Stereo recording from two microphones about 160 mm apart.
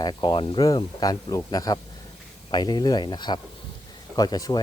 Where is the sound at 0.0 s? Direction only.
30° left (ahead or behind).